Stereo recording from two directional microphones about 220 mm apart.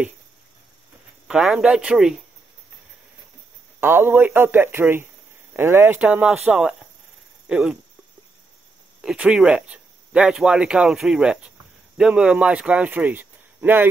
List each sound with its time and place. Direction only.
1.2 s speech: centre (ahead or behind)
3.8 s speech: 10° right (ahead or behind)
9.0 s speech: 5° right (ahead or behind)